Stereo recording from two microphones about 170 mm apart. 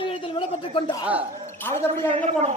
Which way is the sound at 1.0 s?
10° right (ahead or behind).